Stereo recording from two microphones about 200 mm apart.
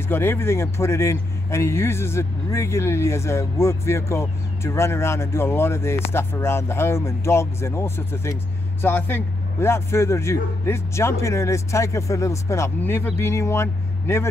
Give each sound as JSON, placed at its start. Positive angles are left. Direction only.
{"t": 0.1, "sound": "a man's voice", "side_deg": 10}